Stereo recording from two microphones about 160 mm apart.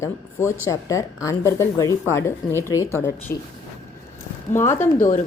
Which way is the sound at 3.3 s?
75° left (ahead or behind).